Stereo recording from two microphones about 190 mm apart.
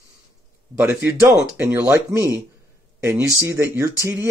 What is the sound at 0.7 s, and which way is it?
Speech, 10° right (ahead or behind).